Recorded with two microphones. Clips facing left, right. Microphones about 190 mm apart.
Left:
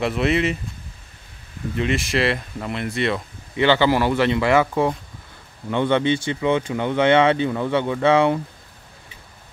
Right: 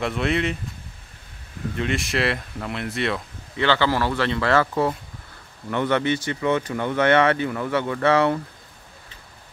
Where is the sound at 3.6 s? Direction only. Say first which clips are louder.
Left 4 dB; 15° left (ahead or behind).